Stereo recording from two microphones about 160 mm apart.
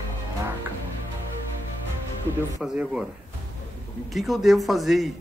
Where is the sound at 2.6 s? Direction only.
5° right (ahead or behind).